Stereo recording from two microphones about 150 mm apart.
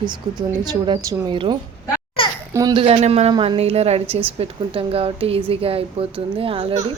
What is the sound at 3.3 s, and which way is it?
Speech, 30° right (ahead or behind).